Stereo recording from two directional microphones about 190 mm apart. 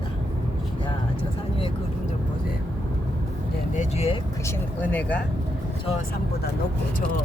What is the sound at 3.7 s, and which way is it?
Speech, 35° left (ahead or behind).